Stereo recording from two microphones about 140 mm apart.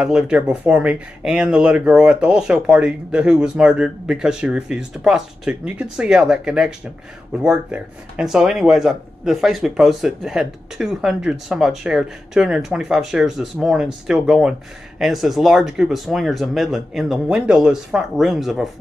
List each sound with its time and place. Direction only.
0.0 s speech: 5° right (ahead or behind)